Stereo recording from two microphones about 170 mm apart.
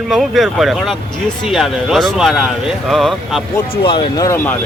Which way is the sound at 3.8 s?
30° left (ahead or behind).